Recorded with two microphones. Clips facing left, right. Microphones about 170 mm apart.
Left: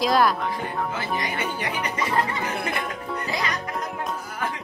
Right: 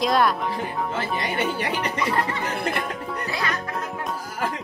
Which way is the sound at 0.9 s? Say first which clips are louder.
Right 2 dB; 30° right (ahead or behind).